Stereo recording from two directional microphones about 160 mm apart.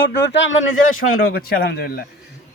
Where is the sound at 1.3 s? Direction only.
75° left (ahead or behind).